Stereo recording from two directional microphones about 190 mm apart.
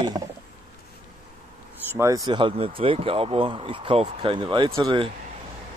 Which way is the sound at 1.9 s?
15° right (ahead or behind).